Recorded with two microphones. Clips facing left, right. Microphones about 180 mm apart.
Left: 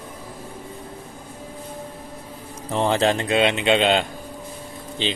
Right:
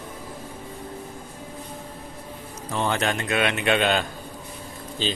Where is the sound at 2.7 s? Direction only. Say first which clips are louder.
Left 5 dB; 30° left (ahead or behind).